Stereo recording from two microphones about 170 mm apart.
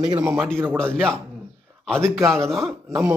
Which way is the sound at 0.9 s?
5° left (ahead or behind).